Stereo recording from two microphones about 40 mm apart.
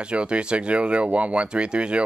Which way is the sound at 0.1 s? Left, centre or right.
Right.